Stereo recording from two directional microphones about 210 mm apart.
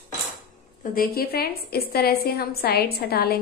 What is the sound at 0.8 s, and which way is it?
A woman's voice, 45° left (ahead or behind).